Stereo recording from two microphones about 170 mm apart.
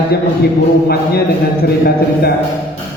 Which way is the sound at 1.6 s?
65° left (ahead or behind).